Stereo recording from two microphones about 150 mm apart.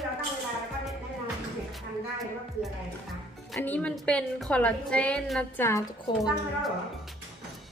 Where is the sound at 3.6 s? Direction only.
10° left (ahead or behind).